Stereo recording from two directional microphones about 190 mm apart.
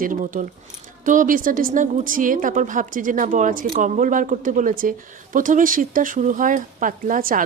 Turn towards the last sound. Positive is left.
turn(degrees=-45)  # may be behind; listen again after turning